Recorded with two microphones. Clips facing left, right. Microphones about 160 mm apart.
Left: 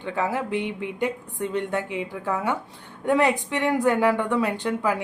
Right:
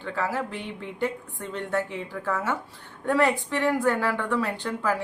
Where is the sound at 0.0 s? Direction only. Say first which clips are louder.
Left 3 dB; 20° left (ahead or behind).